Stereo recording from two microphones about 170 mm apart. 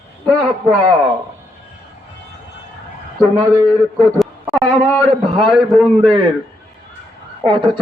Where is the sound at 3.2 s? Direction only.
20° right (ahead or behind).